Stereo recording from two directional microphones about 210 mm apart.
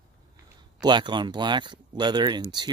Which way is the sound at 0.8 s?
20° right (ahead or behind).